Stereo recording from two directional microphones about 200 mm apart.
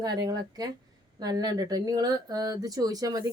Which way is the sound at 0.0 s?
20° right (ahead or behind).